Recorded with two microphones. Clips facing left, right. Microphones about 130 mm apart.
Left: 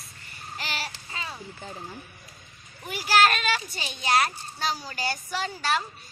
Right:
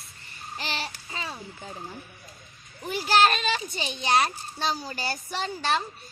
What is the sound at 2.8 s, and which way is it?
A child's voice, 25° right (ahead or behind).